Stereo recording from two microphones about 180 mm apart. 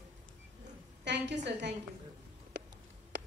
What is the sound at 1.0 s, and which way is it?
Speech, 75° right (ahead or behind).